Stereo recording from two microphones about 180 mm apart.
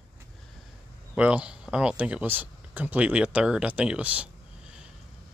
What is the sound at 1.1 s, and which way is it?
Speech, 5° right (ahead or behind).